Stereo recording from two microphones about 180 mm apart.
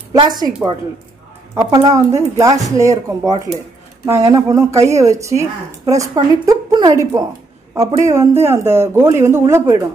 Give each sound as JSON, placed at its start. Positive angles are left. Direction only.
{"t": 0.1, "sound": "a woman's voice", "side_deg": -20}
{"t": 1.5, "sound": "speech", "side_deg": -20}